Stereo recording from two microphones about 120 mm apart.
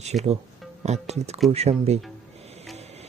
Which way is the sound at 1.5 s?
60° right (ahead or behind).